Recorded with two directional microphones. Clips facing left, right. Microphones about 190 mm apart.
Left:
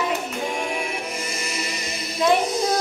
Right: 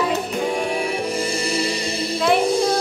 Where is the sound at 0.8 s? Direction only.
30° right (ahead or behind).